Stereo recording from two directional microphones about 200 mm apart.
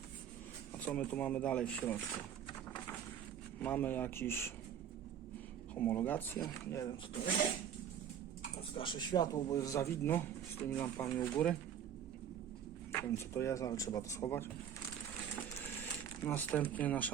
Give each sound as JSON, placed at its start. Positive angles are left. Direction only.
{"t": 0.7, "sound": "speech", "side_deg": 5}
{"t": 3.6, "sound": "speech", "side_deg": 10}
{"t": 5.7, "sound": "speech", "side_deg": 10}
{"t": 8.7, "sound": "speech", "side_deg": 25}
{"t": 12.9, "sound": "speech", "side_deg": 15}
{"t": 15.8, "sound": "speech", "side_deg": 10}